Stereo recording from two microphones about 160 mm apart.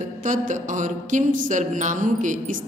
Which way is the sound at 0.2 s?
50° right (ahead or behind).